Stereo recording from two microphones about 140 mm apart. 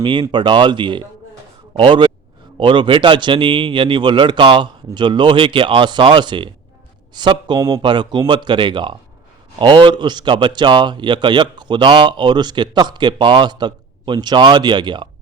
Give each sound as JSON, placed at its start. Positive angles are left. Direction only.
{"t": 0.0, "sound": "speech", "side_deg": -35}